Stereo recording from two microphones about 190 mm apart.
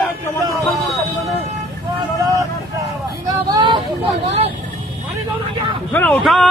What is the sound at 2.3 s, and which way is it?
Vehicle, 15° right (ahead or behind).